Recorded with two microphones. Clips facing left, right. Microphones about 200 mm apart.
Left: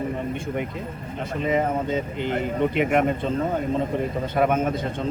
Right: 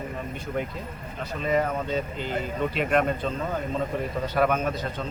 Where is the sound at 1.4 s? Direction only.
20° left (ahead or behind).